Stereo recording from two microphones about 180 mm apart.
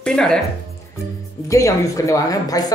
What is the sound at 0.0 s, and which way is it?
Speech, 5° left (ahead or behind).